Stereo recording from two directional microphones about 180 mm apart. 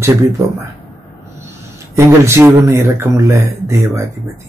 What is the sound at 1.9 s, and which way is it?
Speech, 15° right (ahead or behind).